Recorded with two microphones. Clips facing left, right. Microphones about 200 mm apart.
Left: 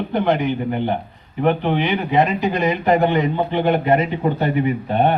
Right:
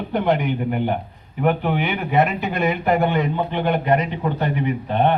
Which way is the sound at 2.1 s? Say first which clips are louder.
Left 1 dB; centre (ahead or behind).